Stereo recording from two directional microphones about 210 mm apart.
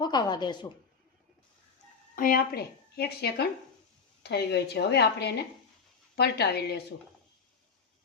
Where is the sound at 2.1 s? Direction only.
45° left (ahead or behind).